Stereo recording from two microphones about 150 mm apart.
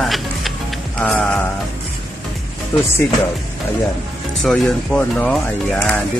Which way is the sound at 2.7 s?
20° left (ahead or behind).